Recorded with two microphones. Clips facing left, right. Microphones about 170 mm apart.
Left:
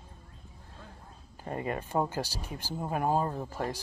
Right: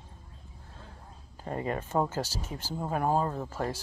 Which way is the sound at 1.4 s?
30° right (ahead or behind).